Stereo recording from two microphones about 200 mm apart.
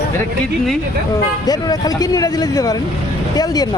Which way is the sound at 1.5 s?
20° left (ahead or behind).